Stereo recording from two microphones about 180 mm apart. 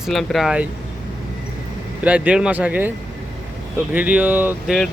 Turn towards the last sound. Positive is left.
turn(degrees=0)  # may be behind; listen again after turning